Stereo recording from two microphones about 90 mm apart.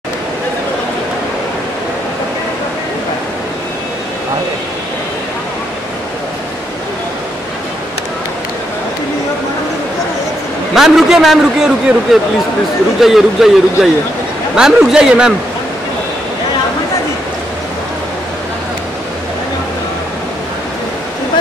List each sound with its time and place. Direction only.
10.7 s a man's voice: 5° right (ahead or behind)